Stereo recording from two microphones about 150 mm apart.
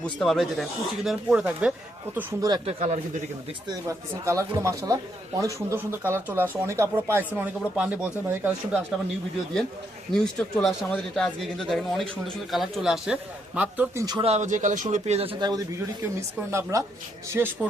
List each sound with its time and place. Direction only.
0.0 s speech: 5° left (ahead or behind)
2.6 s speech: 50° right (ahead or behind)
3.7 s speech: 20° right (ahead or behind)
10.1 s speech: 5° left (ahead or behind)
14.2 s speech: 45° right (ahead or behind)
15.4 s speech: 25° right (ahead or behind)